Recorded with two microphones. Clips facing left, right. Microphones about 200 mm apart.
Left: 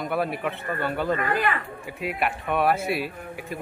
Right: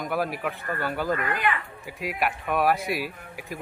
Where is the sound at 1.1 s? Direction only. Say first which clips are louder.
Left 3 dB; 35° left (ahead or behind).